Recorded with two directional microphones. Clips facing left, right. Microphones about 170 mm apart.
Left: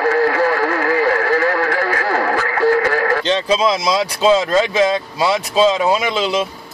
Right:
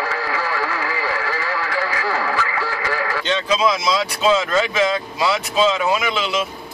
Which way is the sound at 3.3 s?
35° left (ahead or behind).